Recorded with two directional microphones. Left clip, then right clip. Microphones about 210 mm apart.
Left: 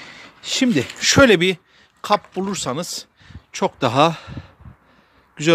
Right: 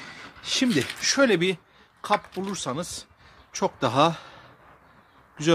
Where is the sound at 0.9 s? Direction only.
50° left (ahead or behind).